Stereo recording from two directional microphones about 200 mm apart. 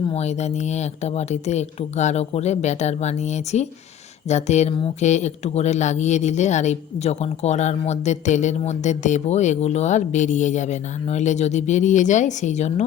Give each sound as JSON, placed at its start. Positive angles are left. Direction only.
{"t": 0.1, "sound": "speech", "side_deg": 35}